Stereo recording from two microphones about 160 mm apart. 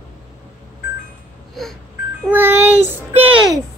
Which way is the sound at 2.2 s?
10° right (ahead or behind).